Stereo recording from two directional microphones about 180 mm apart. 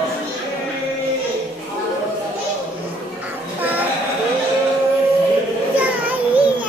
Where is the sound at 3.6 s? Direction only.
10° right (ahead or behind).